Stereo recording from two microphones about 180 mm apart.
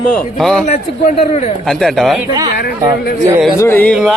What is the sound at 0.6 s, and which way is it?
Speech, 40° left (ahead or behind).